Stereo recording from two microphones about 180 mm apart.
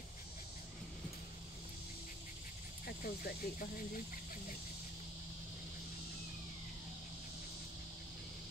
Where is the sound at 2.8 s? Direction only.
55° left (ahead or behind).